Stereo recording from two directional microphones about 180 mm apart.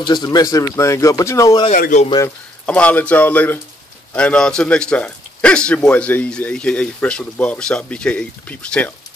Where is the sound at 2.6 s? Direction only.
5° left (ahead or behind).